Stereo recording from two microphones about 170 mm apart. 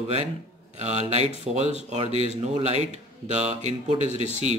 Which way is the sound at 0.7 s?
40° right (ahead or behind).